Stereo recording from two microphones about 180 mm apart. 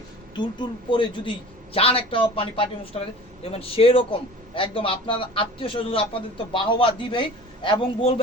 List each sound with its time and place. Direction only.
0.9 s a man's voice: 25° left (ahead or behind)